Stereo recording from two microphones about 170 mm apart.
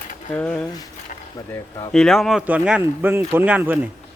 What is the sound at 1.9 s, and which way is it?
A man's voice, 5° left (ahead or behind).